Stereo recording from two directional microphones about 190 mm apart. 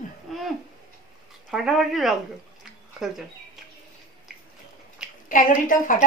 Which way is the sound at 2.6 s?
Centre (ahead or behind).